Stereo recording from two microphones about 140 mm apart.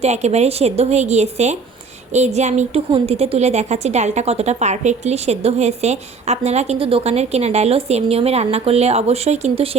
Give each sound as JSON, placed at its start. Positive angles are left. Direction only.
{"t": 0.0, "sound": "a woman's voice", "side_deg": -50}